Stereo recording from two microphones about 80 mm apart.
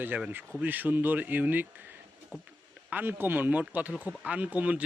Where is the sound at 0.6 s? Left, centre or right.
Right.